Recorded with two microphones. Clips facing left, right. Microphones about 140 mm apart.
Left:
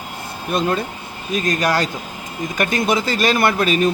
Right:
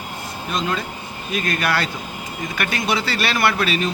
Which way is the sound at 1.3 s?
40° left (ahead or behind).